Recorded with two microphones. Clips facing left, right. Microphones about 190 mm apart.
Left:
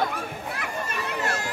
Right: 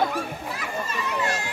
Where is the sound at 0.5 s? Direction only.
55° left (ahead or behind).